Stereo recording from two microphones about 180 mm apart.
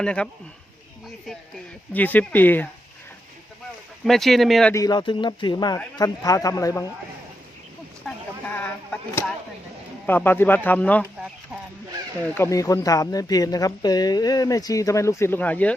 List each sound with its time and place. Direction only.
0.0 s speech: 5° left (ahead or behind)
1.9 s speech: 10° left (ahead or behind)
4.0 s speech: centre (ahead or behind)
4.7 s speech: 20° left (ahead or behind)
8.5 s a sound: 10° left (ahead or behind)
10.1 s speech: 10° left (ahead or behind)
12.3 s speech: 15° left (ahead or behind)